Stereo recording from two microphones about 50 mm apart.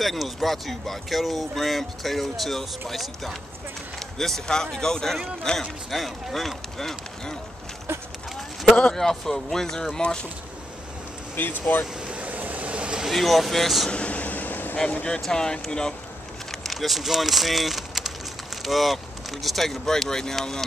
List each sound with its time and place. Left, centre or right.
0.0 s speech: centre
8.9 s speech: centre
11.3 s speech: left
12.1 s vehicle: right
13.1 s speech: centre
13.8 s vehicle: left
15.0 s speech: centre
16.6 s speech: centre